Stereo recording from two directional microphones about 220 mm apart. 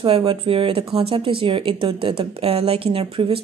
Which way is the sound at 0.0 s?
25° right (ahead or behind).